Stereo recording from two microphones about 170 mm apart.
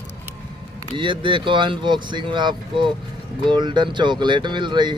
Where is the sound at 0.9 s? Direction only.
30° right (ahead or behind).